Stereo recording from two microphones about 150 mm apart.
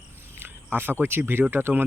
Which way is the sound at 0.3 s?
15° right (ahead or behind).